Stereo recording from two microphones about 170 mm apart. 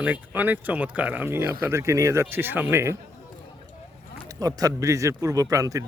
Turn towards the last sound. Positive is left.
turn(degrees=-20)  # may be behind; listen again after turning